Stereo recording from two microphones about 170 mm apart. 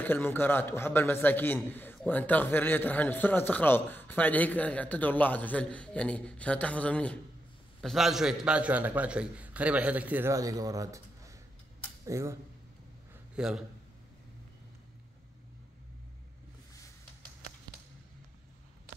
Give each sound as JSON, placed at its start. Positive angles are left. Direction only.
{"t": 0.0, "sound": "a man's voice", "side_deg": 10}
{"t": 13.4, "sound": "a man's voice", "side_deg": -5}